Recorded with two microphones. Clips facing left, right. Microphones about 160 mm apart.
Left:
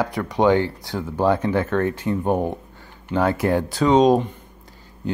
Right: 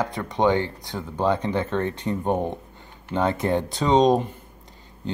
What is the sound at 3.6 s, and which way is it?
Speech, centre (ahead or behind).